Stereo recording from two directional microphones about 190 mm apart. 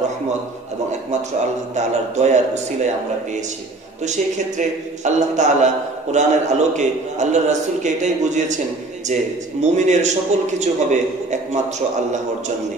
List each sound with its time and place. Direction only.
1.8 s a man's voice: 35° right (ahead or behind)
4.0 s a man's voice: 40° right (ahead or behind)